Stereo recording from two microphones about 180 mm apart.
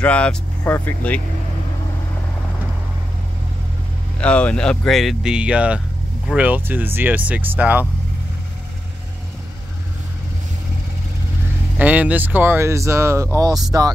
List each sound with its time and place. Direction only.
0.0 s speech: 5° left (ahead or behind)
4.2 s speech: 5° left (ahead or behind); by 7.8 s 10° right (ahead or behind)
11.8 s speech: 10° right (ahead or behind)